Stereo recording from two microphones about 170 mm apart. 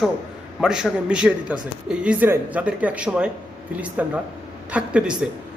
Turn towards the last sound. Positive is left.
turn(degrees=-5)  # may be behind; listen again after turning